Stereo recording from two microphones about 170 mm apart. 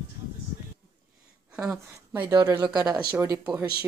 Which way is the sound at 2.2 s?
20° right (ahead or behind).